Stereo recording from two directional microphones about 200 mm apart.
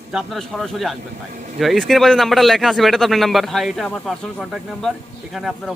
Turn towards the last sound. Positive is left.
turn(degrees=0)  # may be behind; listen again after turning